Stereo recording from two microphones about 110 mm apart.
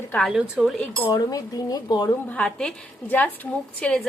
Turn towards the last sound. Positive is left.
turn(degrees=10)  # may be behind; listen again after turning